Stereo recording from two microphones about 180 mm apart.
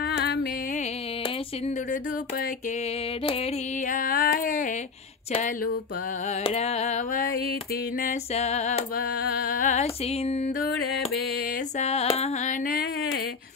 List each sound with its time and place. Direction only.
0.0 s music: 65° left (ahead or behind)
1.9 s music: 55° left (ahead or behind)
3.3 s carnatic music: 35° left (ahead or behind)
3.9 s music: 50° left (ahead or behind)
6.2 s carnatic music: 35° left (ahead or behind)
7.7 s music: 50° left (ahead or behind)
8.3 s carnatic music: 35° left (ahead or behind)
8.9 s music: 55° left (ahead or behind); by 10.5 s 35° left (ahead or behind)
11.8 s carnatic music: 35° left (ahead or behind)